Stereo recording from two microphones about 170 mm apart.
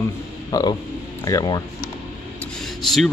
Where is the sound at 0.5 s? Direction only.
20° left (ahead or behind).